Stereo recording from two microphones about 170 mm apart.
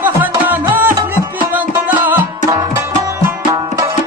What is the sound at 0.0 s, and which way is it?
Music, 10° right (ahead or behind).